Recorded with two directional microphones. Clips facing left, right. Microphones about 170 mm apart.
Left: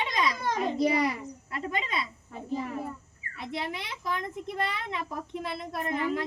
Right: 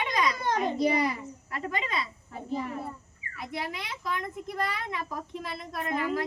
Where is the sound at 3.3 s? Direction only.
25° left (ahead or behind).